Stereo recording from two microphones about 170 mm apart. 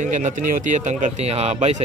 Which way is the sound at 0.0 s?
45° right (ahead or behind).